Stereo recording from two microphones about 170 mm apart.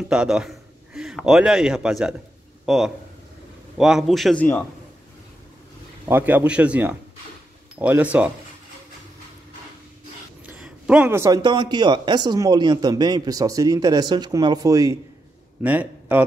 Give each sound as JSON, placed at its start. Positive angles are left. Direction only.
{"t": 0.1, "sound": "a man's voice", "side_deg": -5}
{"t": 6.0, "sound": "speech", "side_deg": -10}
{"t": 10.6, "sound": "a man's voice", "side_deg": -5}
{"t": 15.6, "sound": "speech", "side_deg": -10}